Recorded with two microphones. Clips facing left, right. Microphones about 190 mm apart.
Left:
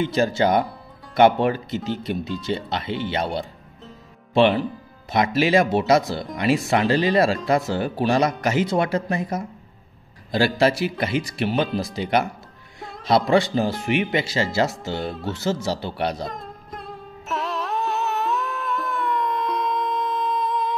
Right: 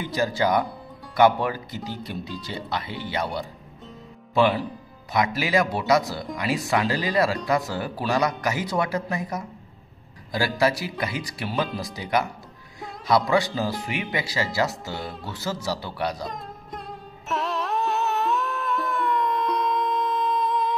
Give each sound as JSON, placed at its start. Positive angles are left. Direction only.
{"t": 0.0, "sound": "speech", "side_deg": 25}
{"t": 13.0, "sound": "speech", "side_deg": 25}
{"t": 16.3, "sound": "music", "side_deg": 0}